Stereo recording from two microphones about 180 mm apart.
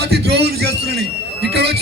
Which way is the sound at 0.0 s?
65° right (ahead or behind).